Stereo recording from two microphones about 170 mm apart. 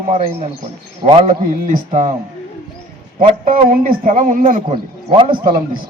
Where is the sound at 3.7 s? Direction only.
55° right (ahead or behind).